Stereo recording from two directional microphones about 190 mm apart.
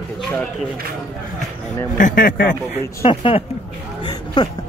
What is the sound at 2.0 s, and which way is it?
Speech, 45° left (ahead or behind).